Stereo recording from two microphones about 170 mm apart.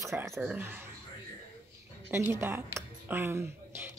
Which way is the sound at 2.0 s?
15° right (ahead or behind).